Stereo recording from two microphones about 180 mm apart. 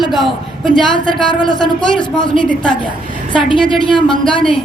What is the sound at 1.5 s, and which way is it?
Speech, 5° left (ahead or behind).